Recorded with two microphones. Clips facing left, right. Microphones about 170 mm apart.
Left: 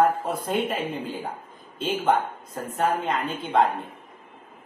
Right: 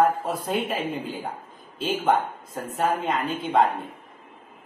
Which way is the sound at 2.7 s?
Centre (ahead or behind).